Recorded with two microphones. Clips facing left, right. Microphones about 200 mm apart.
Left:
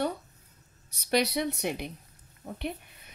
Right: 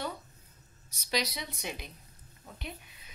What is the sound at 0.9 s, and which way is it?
A woman's voice, 60° left (ahead or behind).